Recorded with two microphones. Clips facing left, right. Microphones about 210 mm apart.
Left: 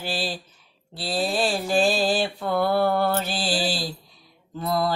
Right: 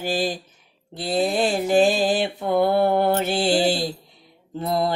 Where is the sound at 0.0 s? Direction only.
40° right (ahead or behind).